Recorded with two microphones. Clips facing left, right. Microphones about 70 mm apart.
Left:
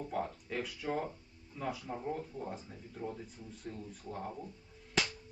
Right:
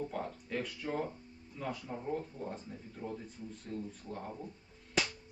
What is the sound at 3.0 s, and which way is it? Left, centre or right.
Speech, left.